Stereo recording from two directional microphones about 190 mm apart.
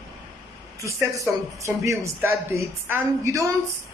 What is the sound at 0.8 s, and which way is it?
Speech, 15° right (ahead or behind).